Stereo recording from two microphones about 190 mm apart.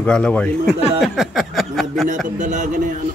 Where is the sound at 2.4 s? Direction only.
40° right (ahead or behind).